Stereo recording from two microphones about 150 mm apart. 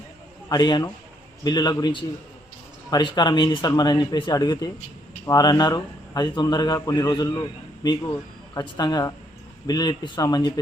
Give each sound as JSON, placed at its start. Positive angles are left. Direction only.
{"t": 0.4, "sound": "a man's voice", "side_deg": 30}